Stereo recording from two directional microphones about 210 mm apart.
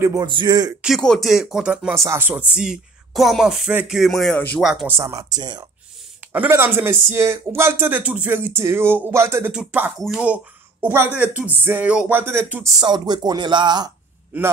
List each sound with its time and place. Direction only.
0.0 s speech: 15° right (ahead or behind)
0.8 s speech: centre (ahead or behind)
4.6 s speech: 5° right (ahead or behind)
12.8 s speech: 20° right (ahead or behind)